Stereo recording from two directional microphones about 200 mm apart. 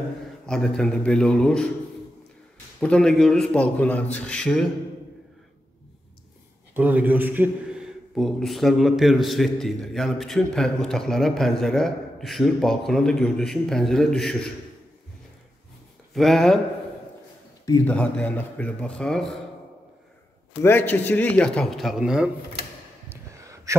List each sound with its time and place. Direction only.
0.5 s a man's voice: 5° left (ahead or behind)
2.8 s a man's voice: 5° left (ahead or behind)
6.7 s a man's voice: 10° right (ahead or behind)
16.1 s a man's voice: centre (ahead or behind)
17.8 s a man's voice: 5° left (ahead or behind)
20.6 s a man's voice: 10° left (ahead or behind)
23.0 s gasp: 15° right (ahead or behind)